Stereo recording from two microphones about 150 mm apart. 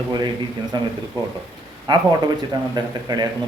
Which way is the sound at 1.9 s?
30° right (ahead or behind).